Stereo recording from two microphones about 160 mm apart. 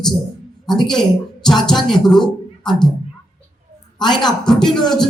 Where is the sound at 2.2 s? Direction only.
30° left (ahead or behind).